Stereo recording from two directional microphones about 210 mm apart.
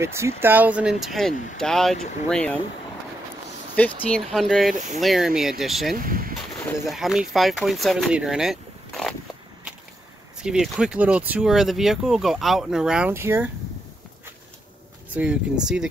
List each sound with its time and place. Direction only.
0.0 s speech: 10° right (ahead or behind); by 2.6 s 5° left (ahead or behind)
3.7 s speech: 5° left (ahead or behind)
5.9 s speech: 40° right (ahead or behind)
6.8 s speech: centre (ahead or behind)
10.4 s speech: 5° right (ahead or behind)
15.6 s speech: 5° right (ahead or behind)